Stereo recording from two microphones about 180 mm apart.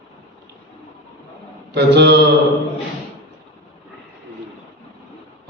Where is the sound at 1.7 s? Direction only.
70° right (ahead or behind).